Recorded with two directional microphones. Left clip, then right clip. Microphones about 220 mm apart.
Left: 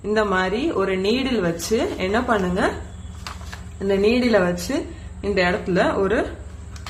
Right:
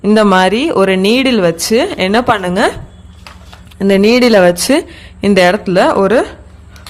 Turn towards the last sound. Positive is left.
turn(degrees=-55)  # may be behind; listen again after turning